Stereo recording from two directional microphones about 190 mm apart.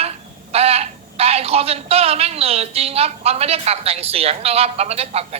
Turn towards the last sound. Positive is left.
turn(degrees=-35)  # may be behind; listen again after turning